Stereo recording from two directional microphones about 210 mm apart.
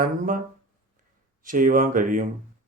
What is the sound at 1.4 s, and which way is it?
Speech, 40° right (ahead or behind).